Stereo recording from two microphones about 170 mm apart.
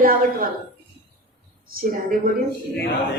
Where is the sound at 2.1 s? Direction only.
55° right (ahead or behind).